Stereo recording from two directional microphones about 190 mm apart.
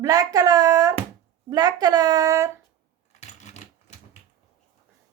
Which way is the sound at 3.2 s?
35° left (ahead or behind).